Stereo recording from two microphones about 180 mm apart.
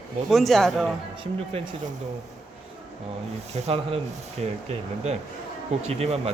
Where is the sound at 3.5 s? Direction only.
35° right (ahead or behind).